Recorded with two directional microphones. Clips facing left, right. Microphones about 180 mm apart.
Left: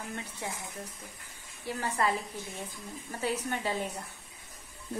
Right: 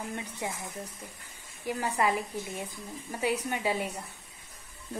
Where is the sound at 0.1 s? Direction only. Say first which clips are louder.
Right 3 dB; 15° right (ahead or behind).